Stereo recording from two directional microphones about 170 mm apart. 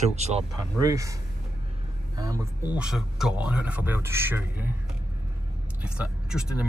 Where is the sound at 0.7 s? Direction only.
20° right (ahead or behind).